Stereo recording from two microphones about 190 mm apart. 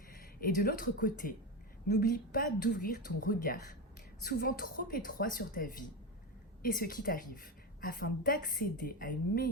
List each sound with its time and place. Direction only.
0.3 s a woman's voice: 50° left (ahead or behind)